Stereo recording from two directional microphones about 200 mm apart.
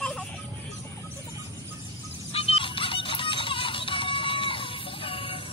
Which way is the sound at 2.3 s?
30° left (ahead or behind).